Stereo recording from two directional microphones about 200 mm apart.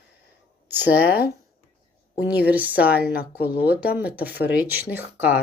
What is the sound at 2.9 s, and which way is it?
Speech, 50° left (ahead or behind).